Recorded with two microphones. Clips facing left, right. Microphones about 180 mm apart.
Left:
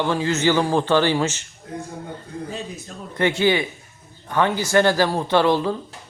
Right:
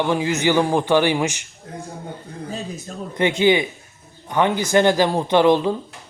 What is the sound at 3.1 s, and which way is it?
A man's voice, 20° right (ahead or behind).